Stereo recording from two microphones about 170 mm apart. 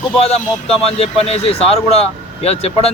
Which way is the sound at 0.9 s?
35° left (ahead or behind).